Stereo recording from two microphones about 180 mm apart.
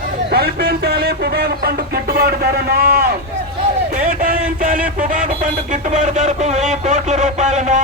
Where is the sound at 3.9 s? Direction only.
50° right (ahead or behind).